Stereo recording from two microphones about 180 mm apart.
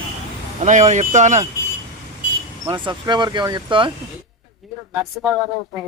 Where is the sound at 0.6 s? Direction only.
40° right (ahead or behind).